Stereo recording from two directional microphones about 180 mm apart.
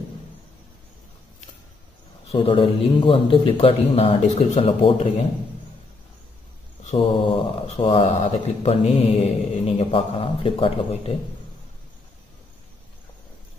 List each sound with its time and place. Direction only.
2.2 s speech: 30° left (ahead or behind)
6.9 s speech: 35° left (ahead or behind)